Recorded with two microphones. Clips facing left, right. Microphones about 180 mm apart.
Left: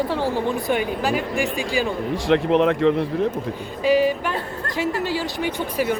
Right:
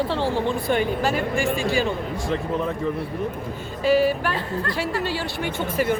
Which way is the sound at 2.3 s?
80° left.